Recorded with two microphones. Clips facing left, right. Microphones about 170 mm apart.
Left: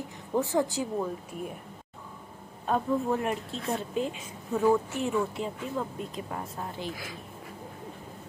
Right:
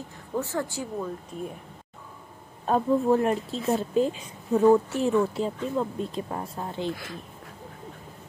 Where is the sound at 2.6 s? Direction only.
35° right (ahead or behind).